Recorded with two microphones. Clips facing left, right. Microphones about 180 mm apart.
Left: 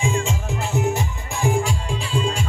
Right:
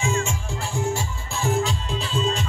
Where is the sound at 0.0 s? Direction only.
15° left (ahead or behind).